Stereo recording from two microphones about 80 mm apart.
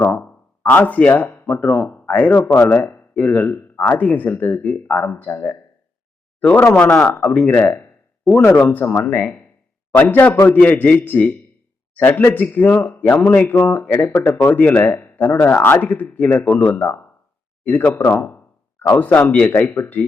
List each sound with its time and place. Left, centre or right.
0.0 s speech: left
6.7 s speech: centre
8.4 s speech: left
8.6 s a man's voice: centre